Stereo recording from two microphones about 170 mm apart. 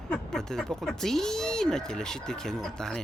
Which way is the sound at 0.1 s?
5° left (ahead or behind).